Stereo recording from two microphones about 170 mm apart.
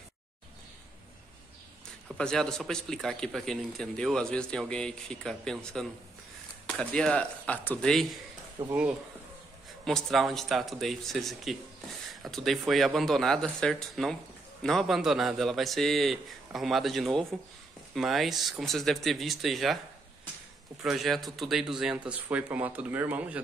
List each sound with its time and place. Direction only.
2.1 s speech: 5° left (ahead or behind)
8.6 s speech: 20° right (ahead or behind)
9.8 s speech: centre (ahead or behind)
20.8 s speech: centre (ahead or behind)